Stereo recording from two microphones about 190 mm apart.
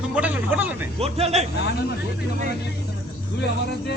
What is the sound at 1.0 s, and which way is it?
Speech, 35° right (ahead or behind).